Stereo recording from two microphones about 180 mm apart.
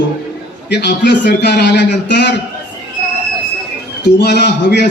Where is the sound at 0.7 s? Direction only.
70° left (ahead or behind).